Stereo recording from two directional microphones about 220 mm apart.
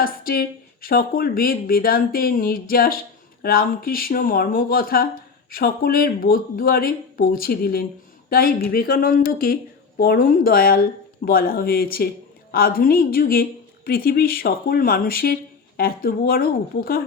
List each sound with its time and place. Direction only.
0.0 s a woman's voice: 40° left (ahead or behind)